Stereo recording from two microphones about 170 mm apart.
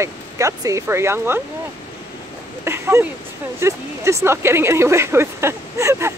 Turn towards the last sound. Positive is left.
turn(degrees=-15)  # may be behind; listen again after turning